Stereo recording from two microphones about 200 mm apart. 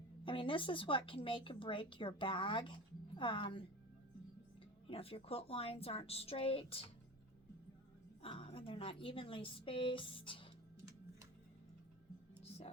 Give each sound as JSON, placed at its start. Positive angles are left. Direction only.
{"t": 0.3, "sound": "speech", "side_deg": 25}
{"t": 4.9, "sound": "speech", "side_deg": 30}
{"t": 8.2, "sound": "speech", "side_deg": 30}
{"t": 12.4, "sound": "whispering", "side_deg": 30}